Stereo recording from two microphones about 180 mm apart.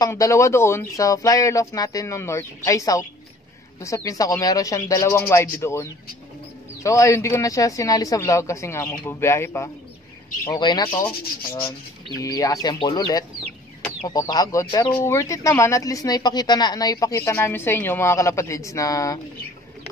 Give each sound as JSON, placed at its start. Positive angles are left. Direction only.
{"t": 0.0, "sound": "speech", "side_deg": 15}
{"t": 10.9, "sound": "speech", "side_deg": 10}
{"t": 12.2, "sound": "speech", "side_deg": 20}